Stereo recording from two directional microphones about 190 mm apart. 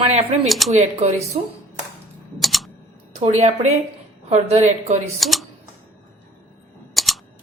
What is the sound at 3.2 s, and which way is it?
A woman's voice, 35° right (ahead or behind).